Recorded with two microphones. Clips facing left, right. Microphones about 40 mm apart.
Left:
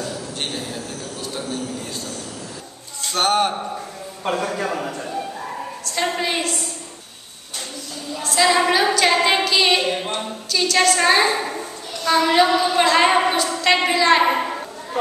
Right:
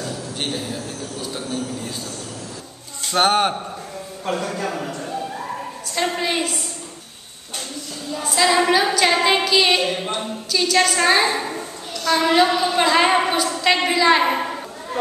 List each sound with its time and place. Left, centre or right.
0.0 s a sound: centre
3.1 s speech: right
4.3 s a man's voice: centre
8.2 s female singing: centre
10.0 s a sound: centre
12.1 s a woman's voice: centre